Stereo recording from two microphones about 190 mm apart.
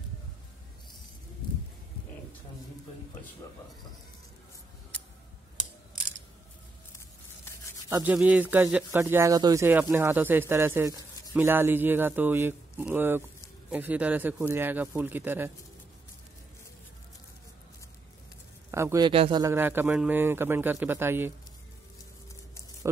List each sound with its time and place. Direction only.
7.9 s speech: 10° right (ahead or behind)
18.7 s a man's voice: 15° right (ahead or behind)
19.4 s speech: 10° right (ahead or behind)